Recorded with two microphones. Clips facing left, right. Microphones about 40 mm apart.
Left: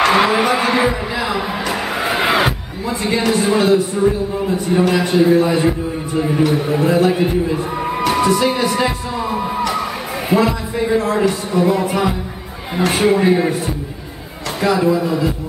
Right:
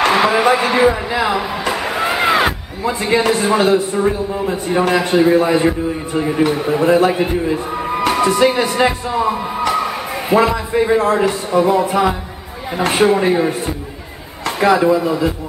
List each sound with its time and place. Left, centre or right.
0.0 s a sound: centre
0.6 s speech: centre
1.7 s music: centre
2.8 s a man's voice: centre
7.5 s music: centre
8.4 s a man's voice: centre
14.6 s speech: right
15.0 s a man's voice: centre